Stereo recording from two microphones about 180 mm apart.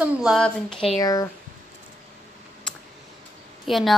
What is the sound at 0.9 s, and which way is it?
Speech, 20° left (ahead or behind).